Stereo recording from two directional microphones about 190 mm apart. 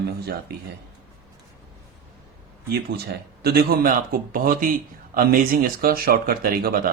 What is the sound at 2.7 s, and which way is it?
Speech, 60° right (ahead or behind).